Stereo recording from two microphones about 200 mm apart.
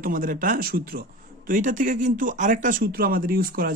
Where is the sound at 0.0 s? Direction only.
40° right (ahead or behind).